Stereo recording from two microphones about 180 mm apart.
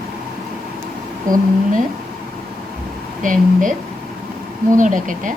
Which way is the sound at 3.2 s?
45° right (ahead or behind).